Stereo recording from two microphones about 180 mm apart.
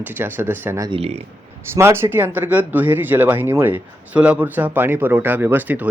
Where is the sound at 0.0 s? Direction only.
10° right (ahead or behind).